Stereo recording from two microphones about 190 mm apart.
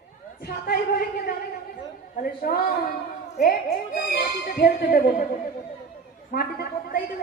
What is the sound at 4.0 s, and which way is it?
Music, 55° left (ahead or behind).